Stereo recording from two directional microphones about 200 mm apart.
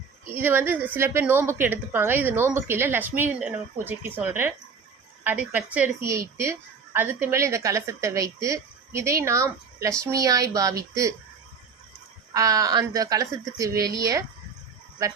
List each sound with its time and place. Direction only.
0.3 s a woman's voice: 10° right (ahead or behind)
12.3 s a woman's voice: 15° right (ahead or behind)